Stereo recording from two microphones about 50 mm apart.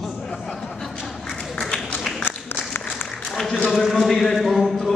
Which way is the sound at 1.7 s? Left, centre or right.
Left.